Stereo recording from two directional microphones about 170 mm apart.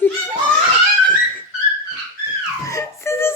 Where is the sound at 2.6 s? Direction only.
15° left (ahead or behind).